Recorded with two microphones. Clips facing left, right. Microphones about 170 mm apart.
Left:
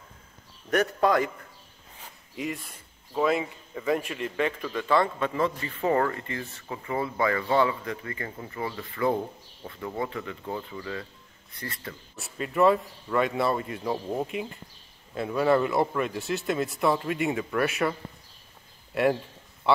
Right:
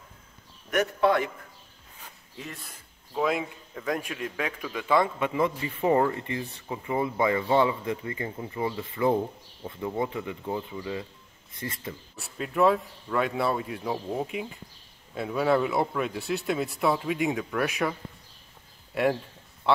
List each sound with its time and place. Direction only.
2.3 s speech: 10° left (ahead or behind)
3.2 s a man's voice: centre (ahead or behind); by 12.0 s 20° right (ahead or behind)
12.2 s speech: centre (ahead or behind)
18.9 s speech: centre (ahead or behind)